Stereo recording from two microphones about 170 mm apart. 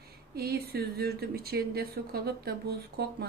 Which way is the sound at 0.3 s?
65° right (ahead or behind).